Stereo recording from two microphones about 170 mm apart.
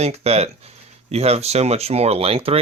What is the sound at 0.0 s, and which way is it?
Speech, 40° right (ahead or behind).